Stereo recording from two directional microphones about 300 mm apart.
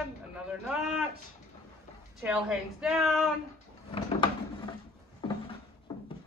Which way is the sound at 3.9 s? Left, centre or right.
Centre.